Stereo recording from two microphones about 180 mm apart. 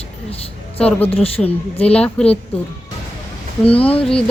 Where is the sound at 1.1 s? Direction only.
30° left (ahead or behind).